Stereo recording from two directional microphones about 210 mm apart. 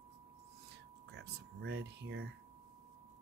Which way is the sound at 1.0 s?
55° right (ahead or behind).